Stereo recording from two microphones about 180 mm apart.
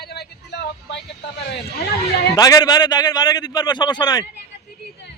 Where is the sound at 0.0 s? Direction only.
65° left (ahead or behind).